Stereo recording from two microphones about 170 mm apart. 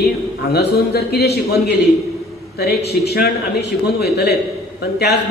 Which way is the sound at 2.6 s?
70° left (ahead or behind).